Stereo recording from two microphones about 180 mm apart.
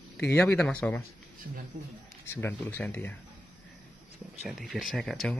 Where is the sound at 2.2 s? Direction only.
15° left (ahead or behind).